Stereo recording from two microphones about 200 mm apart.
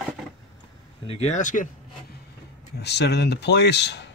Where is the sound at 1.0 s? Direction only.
35° left (ahead or behind).